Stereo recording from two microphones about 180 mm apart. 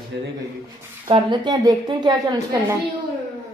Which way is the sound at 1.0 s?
25° right (ahead or behind).